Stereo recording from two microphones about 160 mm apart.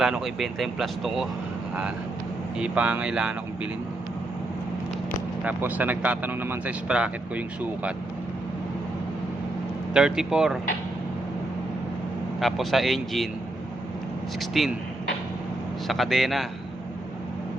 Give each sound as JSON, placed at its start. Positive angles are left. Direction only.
{"t": 0.0, "sound": "speech", "side_deg": 0}
{"t": 2.6, "sound": "speech", "side_deg": -10}
{"t": 5.4, "sound": "speech", "side_deg": -10}
{"t": 9.9, "sound": "speech", "side_deg": -5}
{"t": 12.4, "sound": "speech", "side_deg": 0}
{"t": 14.5, "sound": "speech", "side_deg": 0}
{"t": 15.9, "sound": "speech", "side_deg": 0}